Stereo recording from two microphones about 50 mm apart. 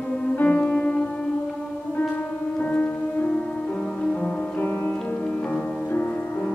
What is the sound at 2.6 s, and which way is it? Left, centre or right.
Music, left.